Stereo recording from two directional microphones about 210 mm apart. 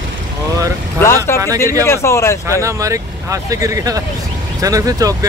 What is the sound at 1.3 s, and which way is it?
Speech, 10° left (ahead or behind).